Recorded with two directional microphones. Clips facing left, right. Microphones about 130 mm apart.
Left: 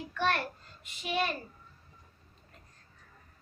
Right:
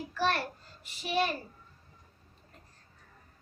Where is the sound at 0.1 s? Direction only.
30° right (ahead or behind).